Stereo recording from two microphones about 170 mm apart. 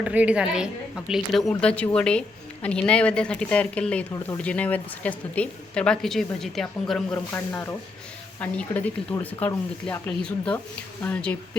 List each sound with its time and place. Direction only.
0.0 s a woman's voice: 10° right (ahead or behind)
7.3 s a woman's voice: 15° left (ahead or behind)